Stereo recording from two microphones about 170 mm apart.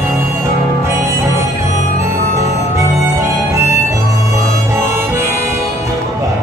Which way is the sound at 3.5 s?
15° right (ahead or behind).